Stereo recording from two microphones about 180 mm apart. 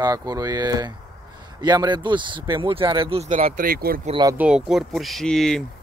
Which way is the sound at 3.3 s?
50° right (ahead or behind).